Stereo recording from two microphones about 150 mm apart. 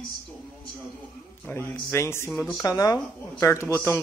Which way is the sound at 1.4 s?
15° left (ahead or behind).